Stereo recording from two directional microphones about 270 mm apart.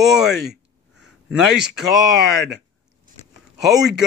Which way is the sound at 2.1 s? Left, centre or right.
Right.